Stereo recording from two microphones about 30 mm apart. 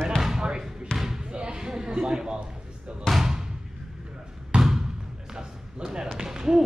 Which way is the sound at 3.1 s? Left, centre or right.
Left.